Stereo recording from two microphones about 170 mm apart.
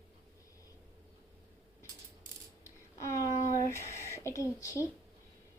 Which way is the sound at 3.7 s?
15° left (ahead or behind).